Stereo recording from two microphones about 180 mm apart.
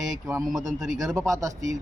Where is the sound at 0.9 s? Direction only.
20° right (ahead or behind).